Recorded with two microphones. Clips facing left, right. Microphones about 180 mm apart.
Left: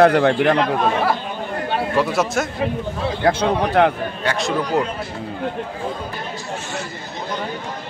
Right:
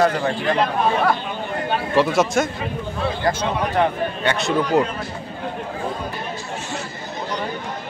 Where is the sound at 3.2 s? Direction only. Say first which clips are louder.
Left 6 dB; 60° left (ahead or behind).